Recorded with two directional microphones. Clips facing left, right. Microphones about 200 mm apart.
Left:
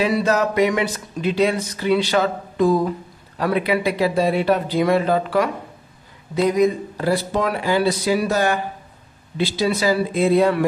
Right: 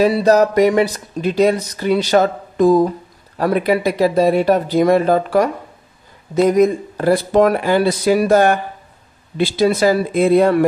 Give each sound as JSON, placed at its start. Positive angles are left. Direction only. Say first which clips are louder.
{"t": 0.0, "sound": "speech", "louder": "right 6 dB", "side_deg": -40}